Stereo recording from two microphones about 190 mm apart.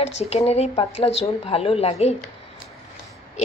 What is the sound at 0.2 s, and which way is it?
Speech, 35° left (ahead or behind).